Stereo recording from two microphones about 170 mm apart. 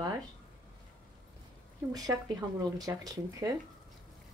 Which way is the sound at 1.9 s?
20° right (ahead or behind).